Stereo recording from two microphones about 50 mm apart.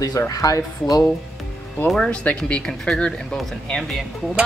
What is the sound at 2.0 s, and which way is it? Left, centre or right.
Speech, left.